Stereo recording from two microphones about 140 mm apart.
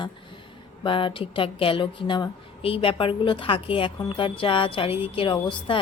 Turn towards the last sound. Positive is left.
turn(degrees=35)  # may be behind; listen again after turning